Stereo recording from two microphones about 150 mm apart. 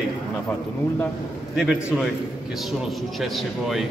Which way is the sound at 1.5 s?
Centre (ahead or behind).